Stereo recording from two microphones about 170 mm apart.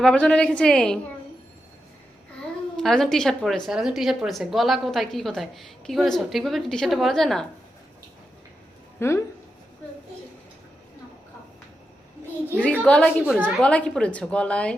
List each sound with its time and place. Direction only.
0.0 s a woman's voice: 5° left (ahead or behind)
2.7 s a woman's voice: 5° left (ahead or behind)
9.0 s speech: 15° left (ahead or behind)
12.8 s a woman's voice: 10° left (ahead or behind)